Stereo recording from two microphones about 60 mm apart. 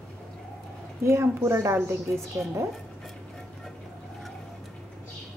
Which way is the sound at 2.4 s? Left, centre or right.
Centre.